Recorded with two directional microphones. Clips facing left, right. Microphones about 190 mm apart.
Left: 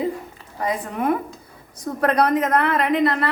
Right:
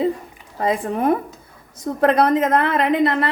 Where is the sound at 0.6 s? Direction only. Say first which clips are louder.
Right 4 dB; 30° right (ahead or behind).